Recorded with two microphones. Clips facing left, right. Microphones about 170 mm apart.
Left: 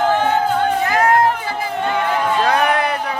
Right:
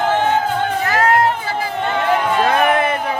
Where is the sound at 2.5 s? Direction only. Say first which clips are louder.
Right 1 dB; 5° right (ahead or behind).